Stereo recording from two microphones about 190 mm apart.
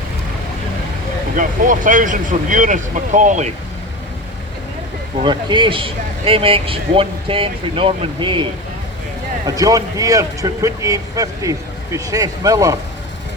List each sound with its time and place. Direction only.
1.4 s speech: 45° right (ahead or behind)
5.2 s speech: 25° right (ahead or behind)
9.6 s speech: 20° right (ahead or behind)